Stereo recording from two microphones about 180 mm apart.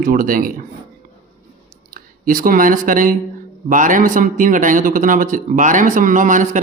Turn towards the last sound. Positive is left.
turn(degrees=-45)  # may be behind; listen again after turning